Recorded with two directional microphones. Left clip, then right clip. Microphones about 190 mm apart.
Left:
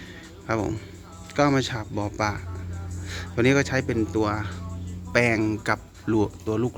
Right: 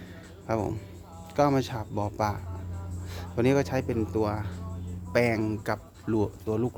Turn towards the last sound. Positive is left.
turn(degrees=0)  # may be behind; listen again after turning